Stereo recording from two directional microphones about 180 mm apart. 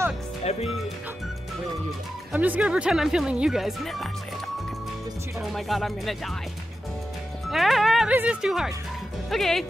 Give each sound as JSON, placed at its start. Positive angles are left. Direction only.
{"t": 0.5, "sound": "speech", "side_deg": 35}
{"t": 2.3, "sound": "speech", "side_deg": -10}
{"t": 5.4, "sound": "speech", "side_deg": 0}
{"t": 7.4, "sound": "speech", "side_deg": 0}